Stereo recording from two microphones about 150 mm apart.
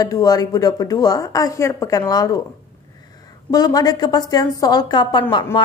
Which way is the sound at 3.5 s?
25° left (ahead or behind).